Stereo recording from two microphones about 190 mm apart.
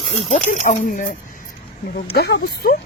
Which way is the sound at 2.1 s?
60° left (ahead or behind).